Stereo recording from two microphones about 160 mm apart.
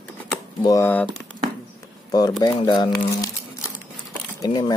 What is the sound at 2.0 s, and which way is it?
Speech, 25° left (ahead or behind).